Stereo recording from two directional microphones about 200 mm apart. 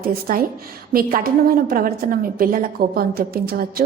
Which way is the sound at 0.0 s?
45° right (ahead or behind).